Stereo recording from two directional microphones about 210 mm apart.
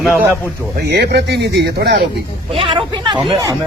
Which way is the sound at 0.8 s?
50° right (ahead or behind).